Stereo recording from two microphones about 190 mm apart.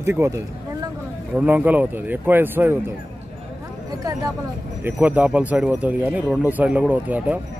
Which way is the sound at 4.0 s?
20° right (ahead or behind).